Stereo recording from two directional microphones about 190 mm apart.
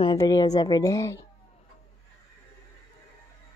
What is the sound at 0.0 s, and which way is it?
A woman's voice, 20° left (ahead or behind).